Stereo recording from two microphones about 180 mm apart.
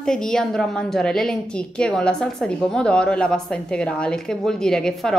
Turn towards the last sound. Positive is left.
turn(degrees=5)  # may be behind; listen again after turning